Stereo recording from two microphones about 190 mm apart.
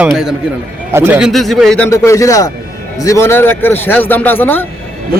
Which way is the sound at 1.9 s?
15° left (ahead or behind).